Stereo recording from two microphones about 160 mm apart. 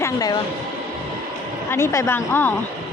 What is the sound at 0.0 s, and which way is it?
Speech, 25° left (ahead or behind).